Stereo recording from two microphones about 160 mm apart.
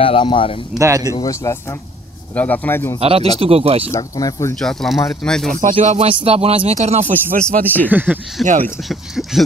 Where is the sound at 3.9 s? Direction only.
20° left (ahead or behind).